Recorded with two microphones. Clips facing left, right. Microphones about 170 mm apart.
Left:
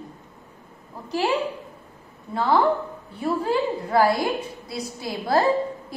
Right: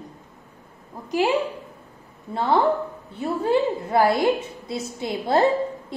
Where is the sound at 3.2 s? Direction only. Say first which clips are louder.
Right 2 dB; 20° right (ahead or behind).